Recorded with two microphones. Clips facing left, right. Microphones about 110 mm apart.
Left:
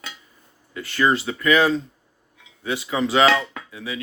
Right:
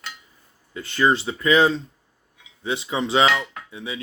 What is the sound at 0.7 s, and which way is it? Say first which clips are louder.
Speech: even; 25° right (ahead or behind).